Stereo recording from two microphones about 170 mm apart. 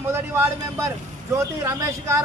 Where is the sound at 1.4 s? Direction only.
20° right (ahead or behind).